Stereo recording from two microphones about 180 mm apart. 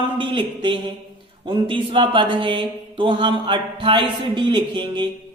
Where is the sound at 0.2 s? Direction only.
25° right (ahead or behind).